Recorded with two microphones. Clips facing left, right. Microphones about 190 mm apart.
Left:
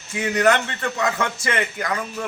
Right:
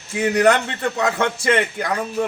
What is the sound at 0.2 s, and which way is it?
A man's voice, 35° right (ahead or behind).